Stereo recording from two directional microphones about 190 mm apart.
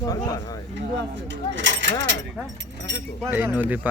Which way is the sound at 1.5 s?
75° right (ahead or behind).